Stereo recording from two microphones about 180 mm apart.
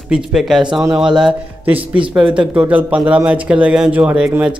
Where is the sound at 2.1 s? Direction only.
5° right (ahead or behind).